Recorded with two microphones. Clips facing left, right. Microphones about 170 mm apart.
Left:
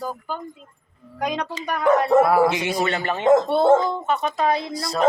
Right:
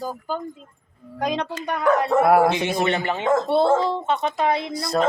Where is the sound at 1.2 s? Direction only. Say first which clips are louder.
Right 1 dB; 30° right (ahead or behind).